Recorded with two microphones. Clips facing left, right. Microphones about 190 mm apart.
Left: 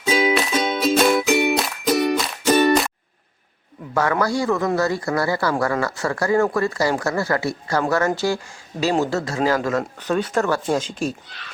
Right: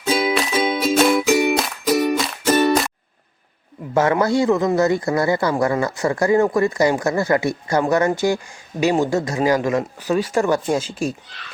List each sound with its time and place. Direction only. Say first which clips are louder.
0.0 s music: even; 5° right (ahead or behind)
3.9 s speech: right 4 dB; 25° right (ahead or behind)